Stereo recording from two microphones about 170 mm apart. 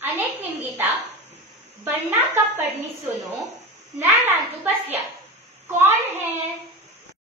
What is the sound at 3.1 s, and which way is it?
Speech, 45° right (ahead or behind).